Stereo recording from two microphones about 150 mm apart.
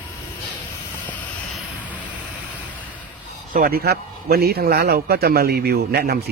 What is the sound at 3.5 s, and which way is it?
A man's voice, 70° right (ahead or behind).